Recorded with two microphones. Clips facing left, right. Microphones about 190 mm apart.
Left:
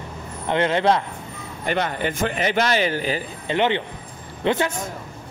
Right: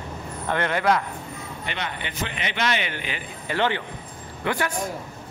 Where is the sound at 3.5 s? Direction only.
20° left (ahead or behind).